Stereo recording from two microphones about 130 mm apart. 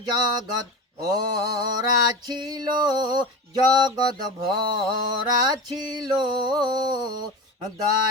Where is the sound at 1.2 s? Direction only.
30° right (ahead or behind).